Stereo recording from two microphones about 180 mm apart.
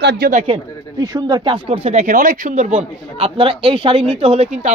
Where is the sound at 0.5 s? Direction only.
20° right (ahead or behind); by 2.8 s 45° right (ahead or behind).